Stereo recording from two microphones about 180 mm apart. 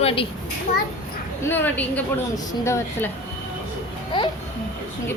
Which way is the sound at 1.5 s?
10° left (ahead or behind).